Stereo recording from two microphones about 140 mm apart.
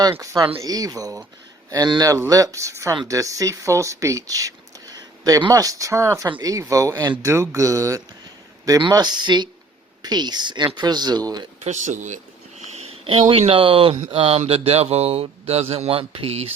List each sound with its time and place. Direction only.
0.1 s speech: 25° right (ahead or behind)
11.6 s speech: 55° right (ahead or behind)